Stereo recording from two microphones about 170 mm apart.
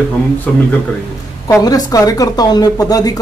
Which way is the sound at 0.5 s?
5° left (ahead or behind).